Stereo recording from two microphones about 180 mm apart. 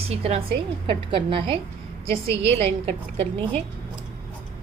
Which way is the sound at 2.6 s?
35° right (ahead or behind).